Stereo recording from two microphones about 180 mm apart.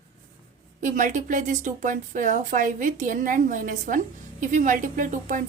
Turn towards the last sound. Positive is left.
turn(degrees=-45)  # may be behind; listen again after turning